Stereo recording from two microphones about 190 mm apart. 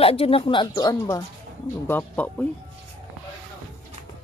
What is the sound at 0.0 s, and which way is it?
Speech, 30° left (ahead or behind).